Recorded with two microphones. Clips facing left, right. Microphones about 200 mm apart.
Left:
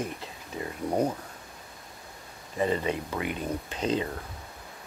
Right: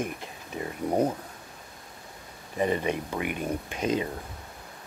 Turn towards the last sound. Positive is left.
turn(degrees=-10)  # may be behind; listen again after turning